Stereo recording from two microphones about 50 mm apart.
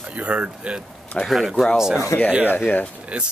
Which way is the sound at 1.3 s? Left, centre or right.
Centre.